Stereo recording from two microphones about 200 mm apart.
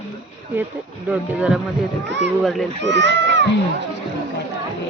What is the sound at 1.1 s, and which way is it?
Speech, 5° right (ahead or behind).